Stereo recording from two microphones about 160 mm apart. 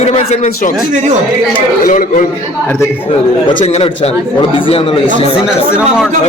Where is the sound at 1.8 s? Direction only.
60° left (ahead or behind).